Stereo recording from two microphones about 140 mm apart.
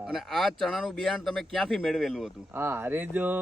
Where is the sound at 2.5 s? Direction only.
15° right (ahead or behind).